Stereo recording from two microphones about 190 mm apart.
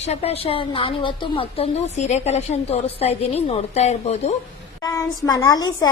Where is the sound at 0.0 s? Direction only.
35° left (ahead or behind).